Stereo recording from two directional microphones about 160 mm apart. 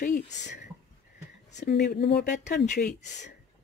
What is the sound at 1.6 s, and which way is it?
Speech, 90° left.